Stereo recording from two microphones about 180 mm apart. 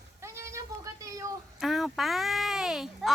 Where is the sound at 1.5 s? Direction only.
Centre (ahead or behind).